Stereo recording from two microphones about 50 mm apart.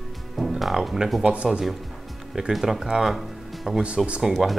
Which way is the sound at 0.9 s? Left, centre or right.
Centre.